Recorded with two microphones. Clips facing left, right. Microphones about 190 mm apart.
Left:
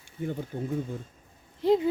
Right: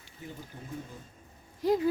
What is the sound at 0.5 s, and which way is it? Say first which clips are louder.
Speech: left 13 dB; 75° left (ahead or behind).